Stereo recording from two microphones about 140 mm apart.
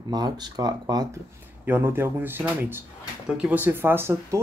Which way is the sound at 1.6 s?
15° right (ahead or behind).